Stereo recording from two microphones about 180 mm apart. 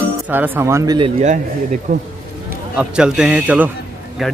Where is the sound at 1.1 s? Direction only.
40° right (ahead or behind).